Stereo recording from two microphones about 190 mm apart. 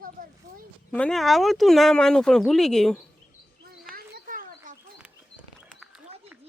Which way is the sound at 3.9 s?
50° right (ahead or behind).